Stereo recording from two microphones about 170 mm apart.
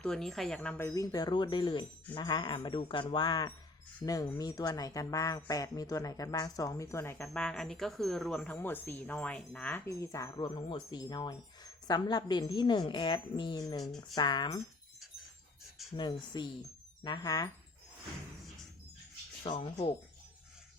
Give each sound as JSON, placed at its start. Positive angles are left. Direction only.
{"t": 0.0, "sound": "a woman's voice", "side_deg": 0}
{"t": 16.0, "sound": "speech", "side_deg": 25}
{"t": 19.5, "sound": "speech", "side_deg": 35}